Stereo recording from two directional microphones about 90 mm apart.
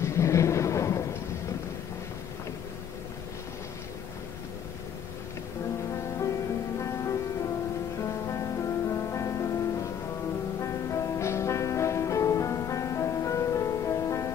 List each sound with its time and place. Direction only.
0.0 s a sound: 30° left (ahead or behind)
6.8 s music: 35° left (ahead or behind)
10.6 s music: 35° left (ahead or behind)